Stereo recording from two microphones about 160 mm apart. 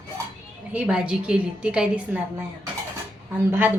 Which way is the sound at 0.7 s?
5° right (ahead or behind).